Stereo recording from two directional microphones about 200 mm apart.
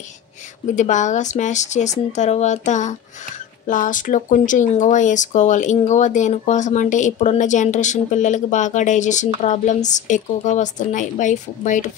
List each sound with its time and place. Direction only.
0.7 s speech: 35° left (ahead or behind)